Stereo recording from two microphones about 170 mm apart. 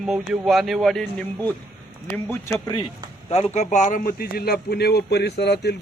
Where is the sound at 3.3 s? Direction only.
40° left (ahead or behind).